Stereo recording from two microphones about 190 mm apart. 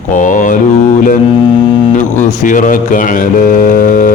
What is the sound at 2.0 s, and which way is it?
A man's voice, 40° left (ahead or behind).